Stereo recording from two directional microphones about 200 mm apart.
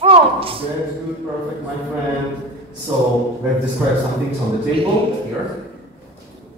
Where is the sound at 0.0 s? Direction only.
25° right (ahead or behind).